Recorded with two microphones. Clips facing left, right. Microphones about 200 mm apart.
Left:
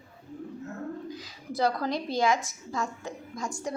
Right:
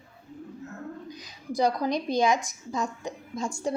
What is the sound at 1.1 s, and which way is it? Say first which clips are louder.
A woman's voice: right 2 dB; 15° right (ahead or behind).